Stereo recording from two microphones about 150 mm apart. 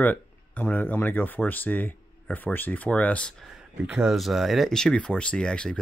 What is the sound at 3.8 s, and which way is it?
Speech, 5° right (ahead or behind).